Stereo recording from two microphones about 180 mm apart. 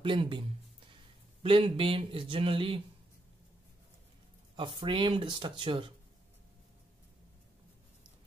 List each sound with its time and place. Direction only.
0.0 s speech: 30° right (ahead or behind)
4.6 s speech: 25° right (ahead or behind)